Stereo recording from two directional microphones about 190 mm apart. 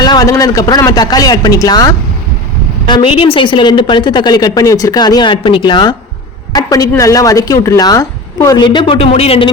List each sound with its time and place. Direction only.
0.0 s a woman's voice: 20° left (ahead or behind)